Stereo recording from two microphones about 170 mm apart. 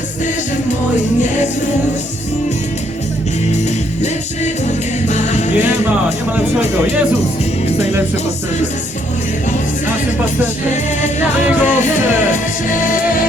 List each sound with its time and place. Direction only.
4.0 s music: 45° left (ahead or behind)
5.5 s music: 10° right (ahead or behind)
6.3 s speech: 10° right (ahead or behind)
11.6 s music: 45° left (ahead or behind)